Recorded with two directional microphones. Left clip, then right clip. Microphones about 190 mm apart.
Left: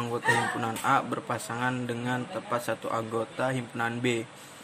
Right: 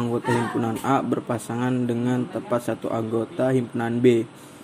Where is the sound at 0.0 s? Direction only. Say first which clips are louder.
Right 2 dB; centre (ahead or behind).